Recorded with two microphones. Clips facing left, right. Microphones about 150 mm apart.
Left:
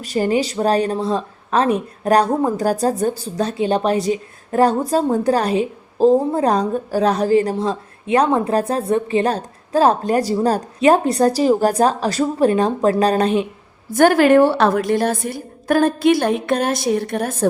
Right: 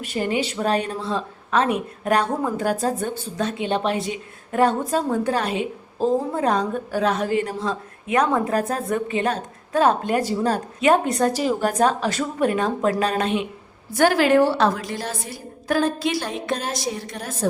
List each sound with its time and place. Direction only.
0.0 s speech: 35° left (ahead or behind)
13.9 s a woman's voice: 50° left (ahead or behind)